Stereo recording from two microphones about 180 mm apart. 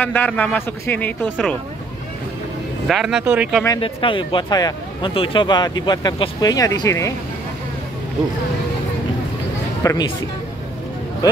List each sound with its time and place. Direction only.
0.0 s a man's voice: 10° left (ahead or behind)
2.9 s speech: centre (ahead or behind)
3.6 s speech: 25° left (ahead or behind)
9.8 s speech: 25° left (ahead or behind)